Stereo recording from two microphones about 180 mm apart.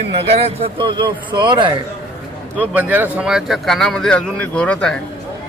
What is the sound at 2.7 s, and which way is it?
A man's voice, 10° right (ahead or behind).